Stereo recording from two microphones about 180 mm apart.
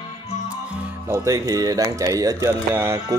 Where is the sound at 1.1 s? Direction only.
20° right (ahead or behind).